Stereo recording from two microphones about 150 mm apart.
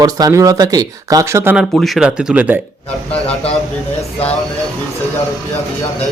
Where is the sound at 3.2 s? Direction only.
40° left (ahead or behind).